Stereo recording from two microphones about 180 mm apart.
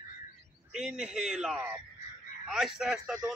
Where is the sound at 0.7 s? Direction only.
5° right (ahead or behind).